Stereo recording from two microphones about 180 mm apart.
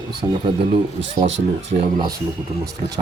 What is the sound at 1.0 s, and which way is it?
Speech, 90° right.